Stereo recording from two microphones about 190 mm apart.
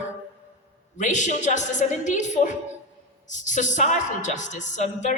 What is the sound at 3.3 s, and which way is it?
A woman's voice, 40° left (ahead or behind).